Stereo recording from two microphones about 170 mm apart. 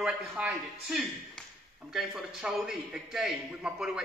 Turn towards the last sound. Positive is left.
turn(degrees=-5)  # may be behind; listen again after turning